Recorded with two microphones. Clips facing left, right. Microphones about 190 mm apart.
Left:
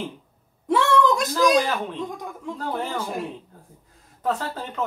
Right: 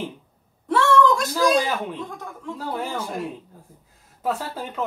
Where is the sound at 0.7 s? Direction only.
15° left (ahead or behind).